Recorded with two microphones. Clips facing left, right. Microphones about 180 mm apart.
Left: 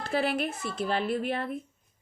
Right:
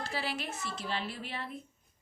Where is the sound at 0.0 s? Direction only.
55° left (ahead or behind).